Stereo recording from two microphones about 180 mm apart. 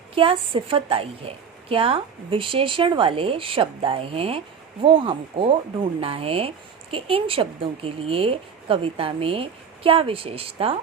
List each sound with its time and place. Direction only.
0.2 s speech: 30° right (ahead or behind)